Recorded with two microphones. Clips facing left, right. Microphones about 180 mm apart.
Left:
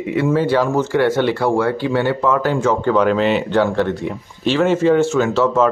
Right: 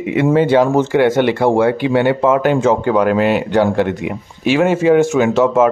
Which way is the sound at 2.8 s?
10° right (ahead or behind).